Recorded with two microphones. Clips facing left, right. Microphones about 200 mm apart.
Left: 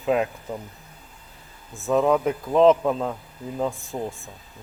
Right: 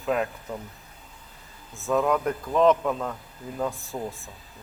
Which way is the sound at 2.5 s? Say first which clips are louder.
Left 4 dB; 30° left (ahead or behind).